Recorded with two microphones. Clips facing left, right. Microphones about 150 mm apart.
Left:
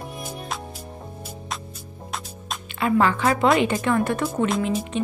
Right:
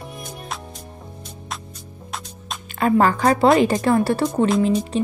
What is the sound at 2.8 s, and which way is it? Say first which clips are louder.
A woman's voice: right 3 dB; 40° right (ahead or behind).